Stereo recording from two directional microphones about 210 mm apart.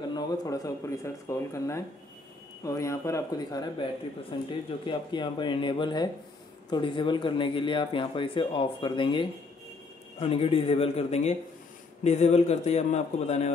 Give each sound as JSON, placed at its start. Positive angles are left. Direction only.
{"t": 0.1, "sound": "a man's voice", "side_deg": 20}